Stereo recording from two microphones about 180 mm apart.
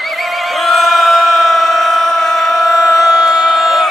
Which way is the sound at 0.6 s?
Centre (ahead or behind).